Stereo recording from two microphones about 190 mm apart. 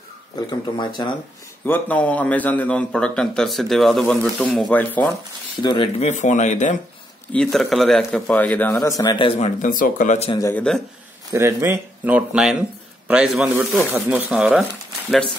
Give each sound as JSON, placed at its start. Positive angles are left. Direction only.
{"t": 0.5, "sound": "speech", "side_deg": 25}
{"t": 1.7, "sound": "a man's voice", "side_deg": 5}
{"t": 5.6, "sound": "speech", "side_deg": 25}
{"t": 6.0, "sound": "speech", "side_deg": 40}
{"t": 7.3, "sound": "a man's voice", "side_deg": 0}
{"t": 9.6, "sound": "speech", "side_deg": 45}
{"t": 10.5, "sound": "a man's voice", "side_deg": 5}
{"t": 11.3, "sound": "a man's voice", "side_deg": -15}